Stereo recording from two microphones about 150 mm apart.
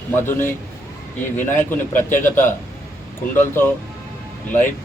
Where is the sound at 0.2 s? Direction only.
15° left (ahead or behind).